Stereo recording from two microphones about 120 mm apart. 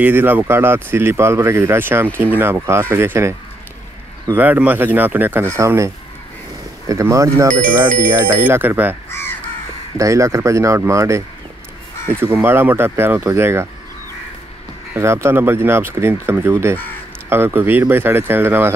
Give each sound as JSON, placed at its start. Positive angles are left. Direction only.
{"t": 0.0, "sound": "speech", "side_deg": -15}
{"t": 4.4, "sound": "speech", "side_deg": -15}
{"t": 6.9, "sound": "speech", "side_deg": -25}
{"t": 9.1, "sound": "crow", "side_deg": 20}
{"t": 9.9, "sound": "speech", "side_deg": -25}
{"t": 15.0, "sound": "speech", "side_deg": -20}